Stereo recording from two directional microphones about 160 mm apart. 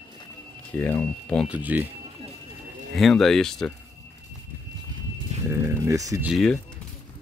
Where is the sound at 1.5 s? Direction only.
10° right (ahead or behind).